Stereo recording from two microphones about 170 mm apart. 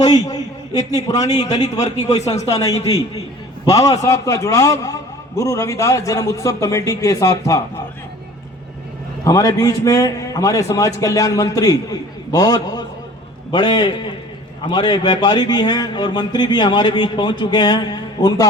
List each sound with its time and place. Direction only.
0.0 s a man's voice: 20° left (ahead or behind)
9.2 s a man's voice: 20° left (ahead or behind)